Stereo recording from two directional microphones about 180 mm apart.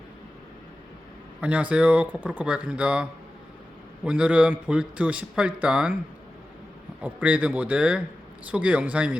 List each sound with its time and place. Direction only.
1.4 s a man's voice: 5° right (ahead or behind)
7.0 s a man's voice: 10° right (ahead or behind)